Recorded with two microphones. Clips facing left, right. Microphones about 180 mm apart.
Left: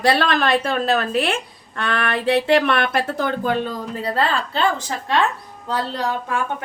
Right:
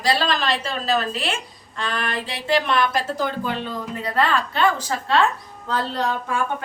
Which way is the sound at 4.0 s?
30° left (ahead or behind).